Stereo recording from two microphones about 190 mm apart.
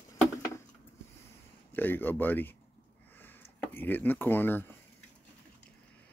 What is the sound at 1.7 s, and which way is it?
Speech, 10° left (ahead or behind).